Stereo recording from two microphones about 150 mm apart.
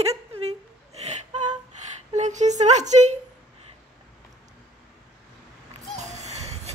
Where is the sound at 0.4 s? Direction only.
45° right (ahead or behind).